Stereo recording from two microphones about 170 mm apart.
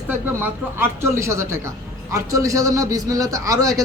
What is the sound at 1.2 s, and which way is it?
A man's voice, 15° right (ahead or behind).